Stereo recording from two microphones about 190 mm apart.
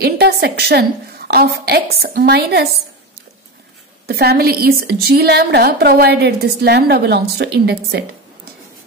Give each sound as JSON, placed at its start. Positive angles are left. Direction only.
{"t": 0.0, "sound": "a woman's voice", "side_deg": -55}
{"t": 4.1, "sound": "a woman's voice", "side_deg": -55}